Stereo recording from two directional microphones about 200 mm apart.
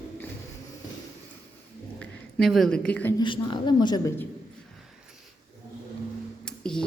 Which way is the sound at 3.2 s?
25° left (ahead or behind).